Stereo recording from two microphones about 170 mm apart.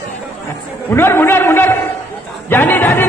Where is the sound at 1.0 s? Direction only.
15° left (ahead or behind).